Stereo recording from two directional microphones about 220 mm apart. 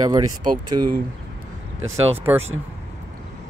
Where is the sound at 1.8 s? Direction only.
25° right (ahead or behind).